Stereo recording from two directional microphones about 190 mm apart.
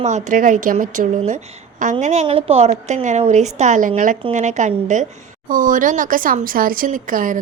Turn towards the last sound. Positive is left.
turn(degrees=-45)  # may be behind; listen again after turning